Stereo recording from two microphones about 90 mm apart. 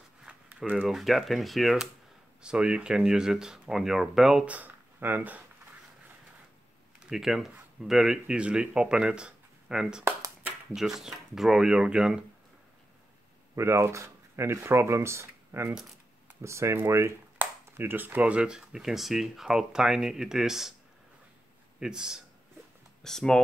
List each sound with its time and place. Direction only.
0.2 s zipper: 10° right (ahead or behind)
0.8 s speech: centre (ahead or behind)
4.5 s speech: 20° right (ahead or behind)
7.0 s speech: 5° right (ahead or behind)
13.6 s speech: 30° right (ahead or behind); by 20.7 s 5° right (ahead or behind)
21.7 s speech: 10° right (ahead or behind)
23.0 s speech: 5° left (ahead or behind)